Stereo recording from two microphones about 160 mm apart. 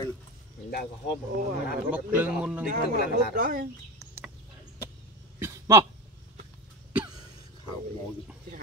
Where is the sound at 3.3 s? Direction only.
55° right (ahead or behind).